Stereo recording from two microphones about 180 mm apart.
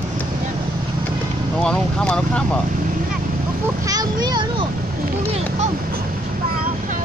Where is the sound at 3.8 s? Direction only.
20° right (ahead or behind).